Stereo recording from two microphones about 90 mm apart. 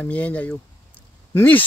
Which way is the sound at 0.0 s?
15° left (ahead or behind).